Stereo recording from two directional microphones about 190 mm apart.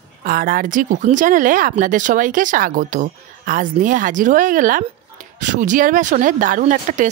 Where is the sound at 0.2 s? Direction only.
50° right (ahead or behind).